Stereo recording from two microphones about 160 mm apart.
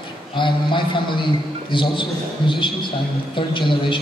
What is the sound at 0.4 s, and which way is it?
A man's voice, 30° left (ahead or behind).